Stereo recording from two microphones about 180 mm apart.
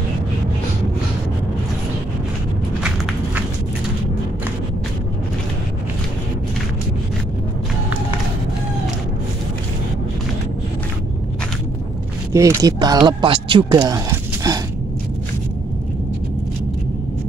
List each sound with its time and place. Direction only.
12.3 s speech: 15° right (ahead or behind)